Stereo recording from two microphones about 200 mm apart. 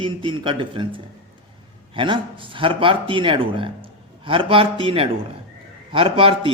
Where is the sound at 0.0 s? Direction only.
25° right (ahead or behind).